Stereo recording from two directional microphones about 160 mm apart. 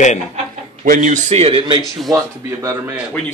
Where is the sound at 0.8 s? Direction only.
50° right (ahead or behind); by 2.1 s 30° right (ahead or behind).